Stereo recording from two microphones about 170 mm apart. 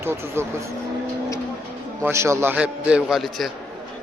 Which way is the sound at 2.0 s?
15° right (ahead or behind).